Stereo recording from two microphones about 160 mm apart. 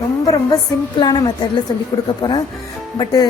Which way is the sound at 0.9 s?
25° left (ahead or behind).